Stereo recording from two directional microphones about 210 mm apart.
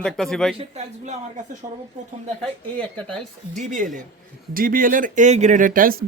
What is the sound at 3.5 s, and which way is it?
A man's voice, 35° right (ahead or behind).